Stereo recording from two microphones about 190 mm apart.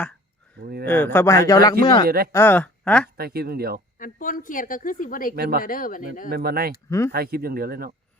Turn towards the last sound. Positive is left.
turn(degrees=-50)  # may be behind; listen again after turning